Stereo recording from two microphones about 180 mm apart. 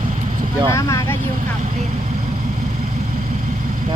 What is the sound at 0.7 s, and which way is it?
Speech, 15° left (ahead or behind).